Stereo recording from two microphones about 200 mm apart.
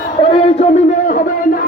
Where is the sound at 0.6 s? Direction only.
30° left (ahead or behind).